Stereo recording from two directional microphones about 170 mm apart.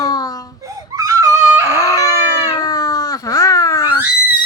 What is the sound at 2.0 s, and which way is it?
Baby cry, 20° left (ahead or behind).